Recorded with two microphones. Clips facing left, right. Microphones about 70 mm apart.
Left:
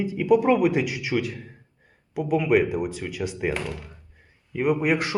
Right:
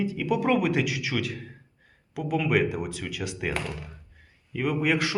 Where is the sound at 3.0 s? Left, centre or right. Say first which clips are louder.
Left 3 dB; left.